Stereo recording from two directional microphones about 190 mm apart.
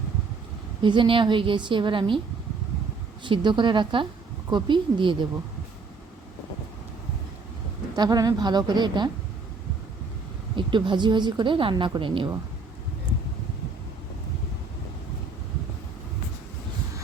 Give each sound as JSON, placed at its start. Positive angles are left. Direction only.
{"t": 0.8, "sound": "a woman's voice", "side_deg": -25}
{"t": 3.2, "sound": "a woman's voice", "side_deg": -25}
{"t": 7.9, "sound": "a woman's voice", "side_deg": -20}
{"t": 10.5, "sound": "a woman's voice", "side_deg": -25}